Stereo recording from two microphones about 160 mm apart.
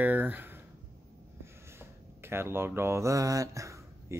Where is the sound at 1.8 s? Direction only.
15° right (ahead or behind).